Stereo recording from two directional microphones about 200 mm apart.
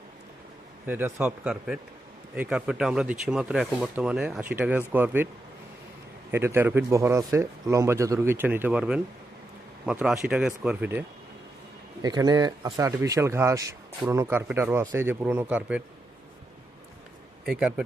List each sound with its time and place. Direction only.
0.9 s speech: 10° right (ahead or behind)
6.3 s speech: 10° right (ahead or behind)
12.0 s speech: 20° right (ahead or behind)
17.4 s speech: centre (ahead or behind)